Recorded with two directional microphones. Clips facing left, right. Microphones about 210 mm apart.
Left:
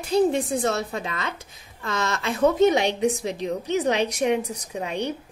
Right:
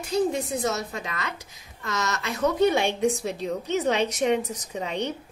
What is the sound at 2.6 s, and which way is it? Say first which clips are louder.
A woman's voice: right 1 dB; 15° left (ahead or behind).